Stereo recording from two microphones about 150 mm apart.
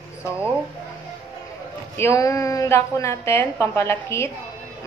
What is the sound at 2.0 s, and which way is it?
A woman's voice, 20° left (ahead or behind).